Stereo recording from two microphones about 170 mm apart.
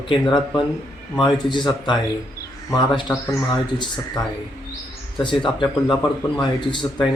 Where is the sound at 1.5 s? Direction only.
25° left (ahead or behind).